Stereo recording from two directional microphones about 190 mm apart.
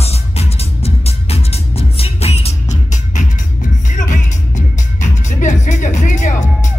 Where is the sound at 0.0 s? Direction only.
35° left (ahead or behind).